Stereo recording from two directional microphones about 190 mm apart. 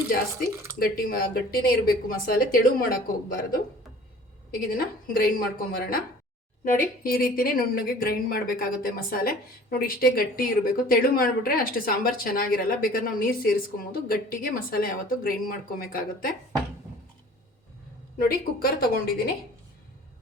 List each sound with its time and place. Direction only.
0.8 s a woman's voice: 50° left (ahead or behind)
4.5 s a woman's voice: 50° left (ahead or behind)
18.2 s a woman's voice: 50° left (ahead or behind)